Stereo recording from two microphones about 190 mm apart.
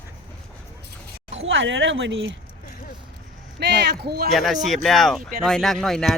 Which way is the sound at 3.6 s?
60° right (ahead or behind).